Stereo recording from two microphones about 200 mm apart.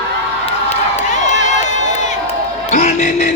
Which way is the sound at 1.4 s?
35° left (ahead or behind).